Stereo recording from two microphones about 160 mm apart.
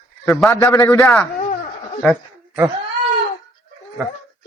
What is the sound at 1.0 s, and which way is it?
Speech, centre (ahead or behind).